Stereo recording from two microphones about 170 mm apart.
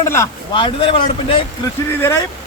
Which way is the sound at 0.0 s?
15° left (ahead or behind).